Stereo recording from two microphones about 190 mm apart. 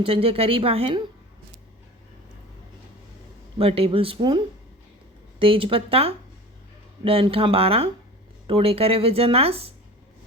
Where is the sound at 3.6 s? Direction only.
30° right (ahead or behind).